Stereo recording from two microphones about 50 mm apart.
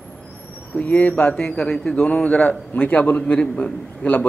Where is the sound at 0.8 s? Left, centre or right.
Left.